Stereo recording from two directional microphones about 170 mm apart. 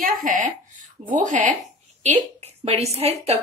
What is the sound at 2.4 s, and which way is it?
Speech, 35° right (ahead or behind).